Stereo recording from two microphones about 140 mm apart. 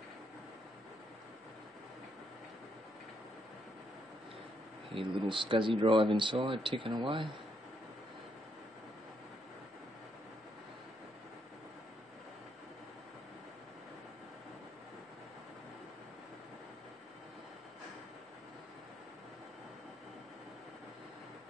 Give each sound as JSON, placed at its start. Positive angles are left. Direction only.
{"t": 4.9, "sound": "speech", "side_deg": -40}